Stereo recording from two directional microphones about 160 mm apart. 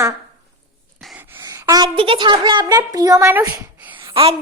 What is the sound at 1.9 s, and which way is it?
A child's voice, 35° right (ahead or behind).